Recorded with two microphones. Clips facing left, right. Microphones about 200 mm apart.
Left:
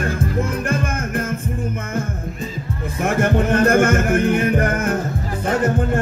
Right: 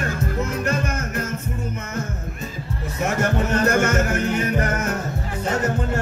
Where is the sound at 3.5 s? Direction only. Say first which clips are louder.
Left 5 dB; 55° left (ahead or behind).